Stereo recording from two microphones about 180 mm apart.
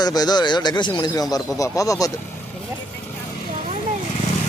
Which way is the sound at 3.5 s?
40° right (ahead or behind).